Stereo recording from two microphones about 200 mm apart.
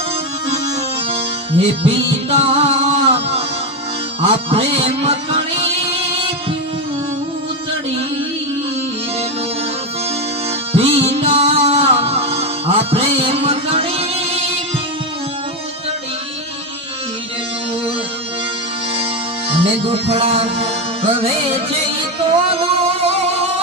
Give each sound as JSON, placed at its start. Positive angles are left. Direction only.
{"t": 1.1, "sound": "music", "side_deg": -30}
{"t": 10.7, "sound": "music", "side_deg": -30}
{"t": 19.5, "sound": "music", "side_deg": -30}
{"t": 22.4, "sound": "a sound", "side_deg": -30}